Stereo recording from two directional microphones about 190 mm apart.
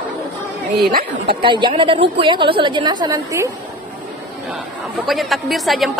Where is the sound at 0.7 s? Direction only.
55° right (ahead or behind).